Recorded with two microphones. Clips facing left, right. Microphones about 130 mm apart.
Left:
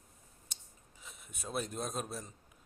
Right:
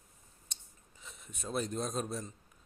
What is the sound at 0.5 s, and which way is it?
Scissors, 5° left (ahead or behind).